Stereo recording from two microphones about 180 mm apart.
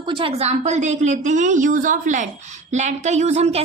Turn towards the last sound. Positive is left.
turn(degrees=-35)  # may be behind; listen again after turning